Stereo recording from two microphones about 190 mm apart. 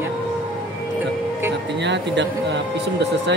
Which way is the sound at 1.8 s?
65° right (ahead or behind).